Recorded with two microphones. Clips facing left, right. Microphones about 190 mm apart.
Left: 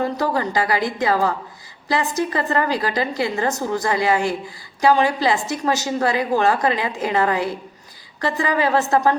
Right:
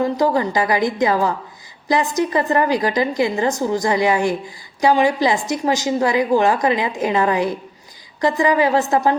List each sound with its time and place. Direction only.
0.0 s a woman's voice: 15° right (ahead or behind)